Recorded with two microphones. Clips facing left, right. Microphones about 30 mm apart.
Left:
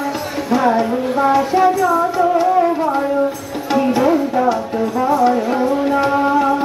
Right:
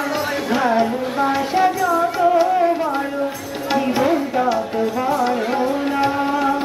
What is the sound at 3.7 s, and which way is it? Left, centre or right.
Music, centre.